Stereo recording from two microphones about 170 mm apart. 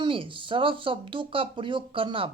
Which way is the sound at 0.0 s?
30° right (ahead or behind).